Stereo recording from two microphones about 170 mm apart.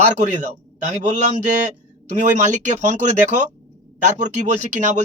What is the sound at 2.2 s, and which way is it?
Speech, 45° right (ahead or behind).